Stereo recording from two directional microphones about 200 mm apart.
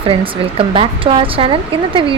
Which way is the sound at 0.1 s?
25° right (ahead or behind).